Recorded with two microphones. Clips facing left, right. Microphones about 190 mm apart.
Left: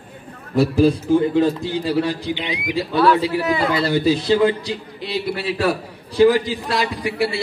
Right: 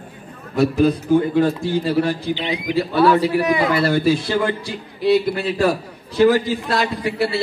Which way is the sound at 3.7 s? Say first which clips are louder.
Right 1 dB; 20° left (ahead or behind).